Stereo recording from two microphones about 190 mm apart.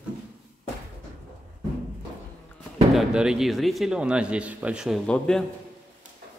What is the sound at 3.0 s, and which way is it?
A man's voice, 5° right (ahead or behind).